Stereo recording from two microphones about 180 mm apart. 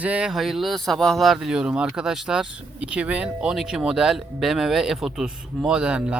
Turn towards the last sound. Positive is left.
turn(degrees=-5)  # may be behind; listen again after turning